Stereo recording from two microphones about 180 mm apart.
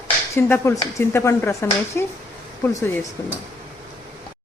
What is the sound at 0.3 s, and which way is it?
Speech, 15° left (ahead or behind).